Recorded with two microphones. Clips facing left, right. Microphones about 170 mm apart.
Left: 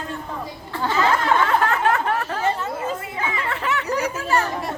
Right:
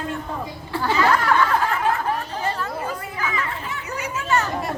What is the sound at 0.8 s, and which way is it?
Chatter, 20° left (ahead or behind).